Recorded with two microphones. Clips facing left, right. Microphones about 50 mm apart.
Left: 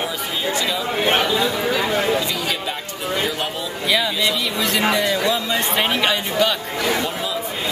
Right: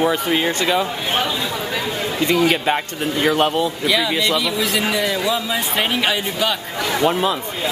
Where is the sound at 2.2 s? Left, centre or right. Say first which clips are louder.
Right 8 dB; right.